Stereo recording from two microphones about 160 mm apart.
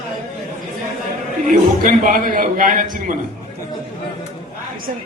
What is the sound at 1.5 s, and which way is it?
A man's voice, 55° right (ahead or behind).